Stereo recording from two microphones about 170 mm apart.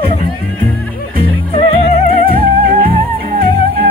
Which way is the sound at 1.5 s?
35° left (ahead or behind).